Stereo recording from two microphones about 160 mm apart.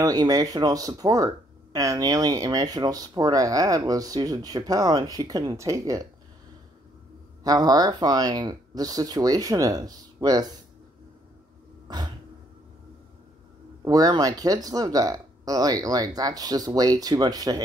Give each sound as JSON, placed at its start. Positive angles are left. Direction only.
{"t": 0.0, "sound": "speech", "side_deg": -25}
{"t": 7.4, "sound": "speech", "side_deg": -25}
{"t": 11.9, "sound": "speech", "side_deg": -25}
{"t": 13.8, "sound": "speech", "side_deg": -25}